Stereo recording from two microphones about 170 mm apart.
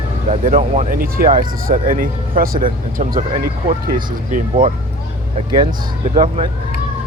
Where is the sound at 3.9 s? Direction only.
25° right (ahead or behind).